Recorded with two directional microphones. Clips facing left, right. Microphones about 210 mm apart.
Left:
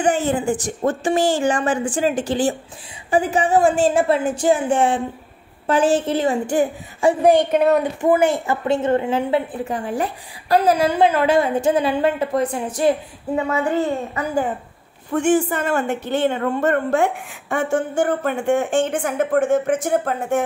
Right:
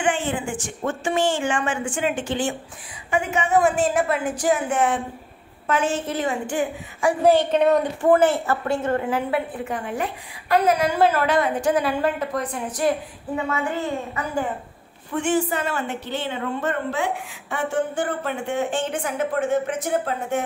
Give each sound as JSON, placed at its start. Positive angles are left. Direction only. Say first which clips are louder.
{"t": 0.0, "sound": "a woman's voice", "louder": "left 5 dB", "side_deg": 40}
{"t": 7.1, "sound": "a woman's voice", "louder": "left 3 dB", "side_deg": 15}
{"t": 11.0, "sound": "a woman's voice", "louder": "left 2 dB", "side_deg": 15}
{"t": 11.2, "sound": "a woman's voice", "louder": "left 4 dB", "side_deg": 25}
{"t": 15.1, "sound": "a woman's voice", "louder": "left 4 dB", "side_deg": 50}